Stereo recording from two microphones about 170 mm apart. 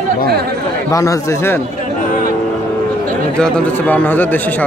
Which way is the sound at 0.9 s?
20° left (ahead or behind).